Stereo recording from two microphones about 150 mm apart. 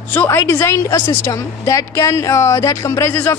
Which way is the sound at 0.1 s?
15° left (ahead or behind).